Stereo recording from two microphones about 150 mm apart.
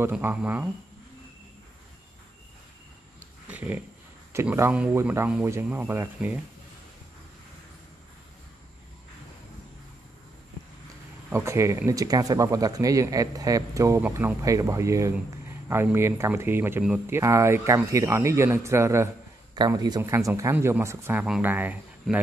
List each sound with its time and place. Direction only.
0.2 s speech: 10° right (ahead or behind)
3.4 s dog: 10° right (ahead or behind)
4.3 s speech: 15° right (ahead or behind)
11.2 s speech: 15° right (ahead or behind)
22.0 s speech: centre (ahead or behind)